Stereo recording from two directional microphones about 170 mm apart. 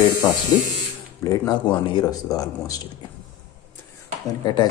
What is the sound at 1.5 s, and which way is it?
Speech, 25° left (ahead or behind).